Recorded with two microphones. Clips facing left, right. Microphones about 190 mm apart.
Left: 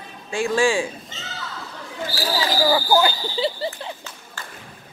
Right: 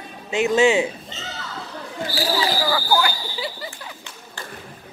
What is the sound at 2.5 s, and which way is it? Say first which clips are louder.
Speech: left 3 dB; 20° left (ahead or behind).